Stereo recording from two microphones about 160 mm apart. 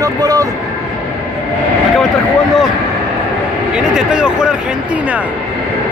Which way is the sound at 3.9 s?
5° right (ahead or behind).